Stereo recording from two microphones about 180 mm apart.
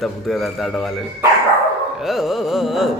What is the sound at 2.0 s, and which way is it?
Mantra, centre (ahead or behind).